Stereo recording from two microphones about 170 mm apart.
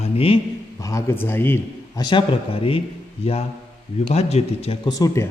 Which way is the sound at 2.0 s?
25° left (ahead or behind).